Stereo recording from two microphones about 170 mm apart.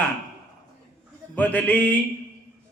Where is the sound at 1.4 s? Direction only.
10° left (ahead or behind).